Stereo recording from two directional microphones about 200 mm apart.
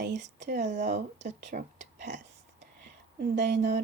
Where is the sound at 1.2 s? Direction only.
40° right (ahead or behind).